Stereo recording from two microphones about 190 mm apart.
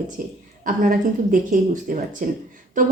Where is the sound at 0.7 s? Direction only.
45° right (ahead or behind).